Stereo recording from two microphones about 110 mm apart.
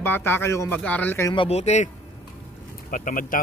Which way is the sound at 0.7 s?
10° left (ahead or behind).